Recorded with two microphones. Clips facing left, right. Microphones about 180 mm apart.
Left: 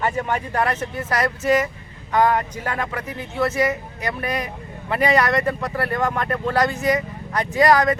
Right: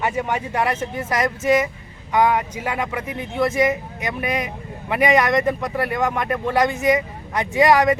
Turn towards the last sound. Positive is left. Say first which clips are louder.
# right 1 dB
turn(degrees=-15)  # may be behind; listen again after turning